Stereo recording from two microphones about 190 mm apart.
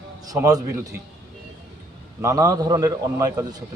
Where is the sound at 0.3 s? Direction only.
20° right (ahead or behind).